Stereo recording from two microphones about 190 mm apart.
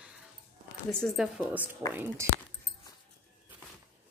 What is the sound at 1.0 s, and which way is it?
Speech, centre (ahead or behind).